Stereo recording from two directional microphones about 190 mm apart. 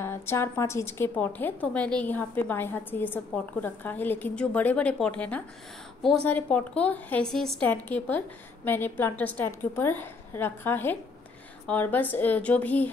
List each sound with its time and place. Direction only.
0.0 s a woman's voice: 10° left (ahead or behind)